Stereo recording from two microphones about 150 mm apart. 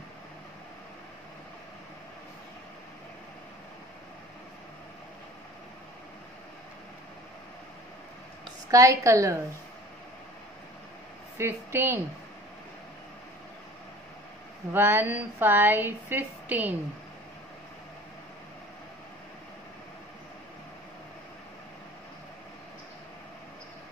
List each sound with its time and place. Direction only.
8.6 s a woman's voice: 20° right (ahead or behind)
11.3 s a woman's voice: 15° right (ahead or behind)
14.7 s a woman's voice: 15° right (ahead or behind)